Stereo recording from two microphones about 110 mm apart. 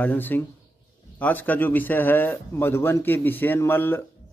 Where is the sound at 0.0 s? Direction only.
15° left (ahead or behind).